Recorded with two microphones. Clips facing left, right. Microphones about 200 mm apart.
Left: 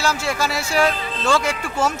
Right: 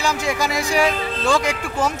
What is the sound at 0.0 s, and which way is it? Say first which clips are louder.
Speech: right 1 dB; 15° right (ahead or behind).